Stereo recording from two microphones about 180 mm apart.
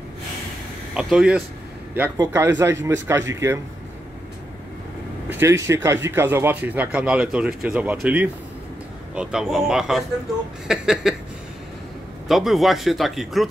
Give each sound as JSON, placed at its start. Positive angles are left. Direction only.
{"t": 0.9, "sound": "speech", "side_deg": -5}
{"t": 2.1, "sound": "speech", "side_deg": -15}
{"t": 5.3, "sound": "speech", "side_deg": -15}
{"t": 12.3, "sound": "speech", "side_deg": 0}